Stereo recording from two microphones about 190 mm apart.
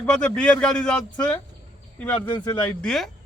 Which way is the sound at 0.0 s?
5° left (ahead or behind).